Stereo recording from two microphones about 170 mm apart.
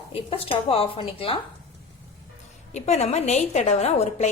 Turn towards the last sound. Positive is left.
turn(degrees=40)  # may be behind; listen again after turning